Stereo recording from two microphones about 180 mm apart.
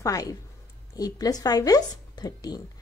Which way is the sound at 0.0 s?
20° left (ahead or behind).